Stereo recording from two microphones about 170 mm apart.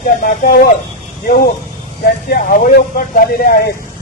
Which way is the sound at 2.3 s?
55° left (ahead or behind).